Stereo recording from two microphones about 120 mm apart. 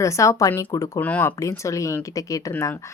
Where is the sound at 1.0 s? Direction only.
15° left (ahead or behind).